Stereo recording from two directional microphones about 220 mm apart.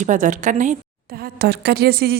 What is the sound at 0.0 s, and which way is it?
A woman's voice, 35° right (ahead or behind).